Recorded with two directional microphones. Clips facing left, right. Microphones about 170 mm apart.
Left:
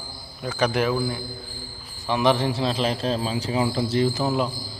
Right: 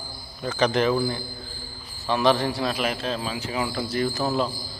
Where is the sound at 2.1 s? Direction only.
20° left (ahead or behind).